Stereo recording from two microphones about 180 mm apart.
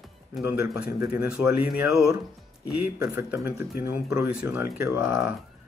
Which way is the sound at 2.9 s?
15° right (ahead or behind).